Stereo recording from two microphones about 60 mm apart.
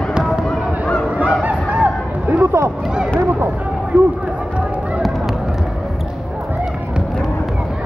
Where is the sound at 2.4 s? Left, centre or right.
Right.